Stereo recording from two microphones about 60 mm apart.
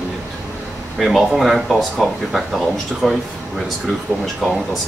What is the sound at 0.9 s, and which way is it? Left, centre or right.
Speech, centre.